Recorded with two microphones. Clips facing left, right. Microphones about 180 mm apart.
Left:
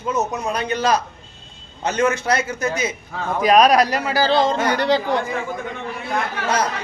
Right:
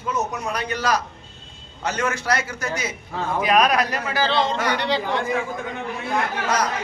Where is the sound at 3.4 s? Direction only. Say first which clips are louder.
Left 5 dB; 35° left (ahead or behind).